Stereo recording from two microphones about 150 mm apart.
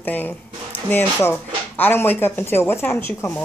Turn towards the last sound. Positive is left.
turn(degrees=15)  # may be behind; listen again after turning